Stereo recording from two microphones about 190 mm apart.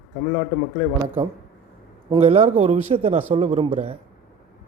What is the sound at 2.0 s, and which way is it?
Speech, 30° right (ahead or behind).